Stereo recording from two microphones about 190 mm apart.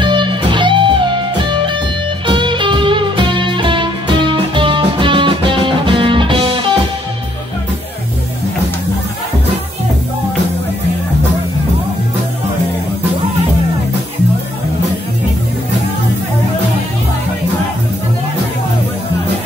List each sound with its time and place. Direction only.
0.0 s music: 25° right (ahead or behind)
2.2 s music: 25° right (ahead or behind)